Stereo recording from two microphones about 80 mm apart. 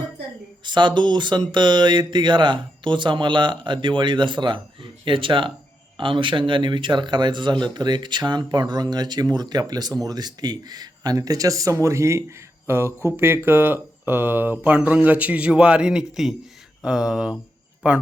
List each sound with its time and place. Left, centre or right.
0.6 s speech: right; by 18.0 s centre